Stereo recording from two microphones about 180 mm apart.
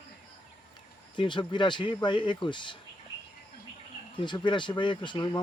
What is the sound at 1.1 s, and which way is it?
Speech, 25° left (ahead or behind).